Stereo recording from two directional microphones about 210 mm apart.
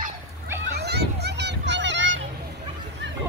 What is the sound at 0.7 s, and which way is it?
Children playing, 50° right (ahead or behind).